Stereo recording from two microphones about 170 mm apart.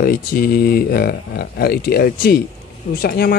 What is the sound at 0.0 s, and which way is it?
Speech, 55° left (ahead or behind).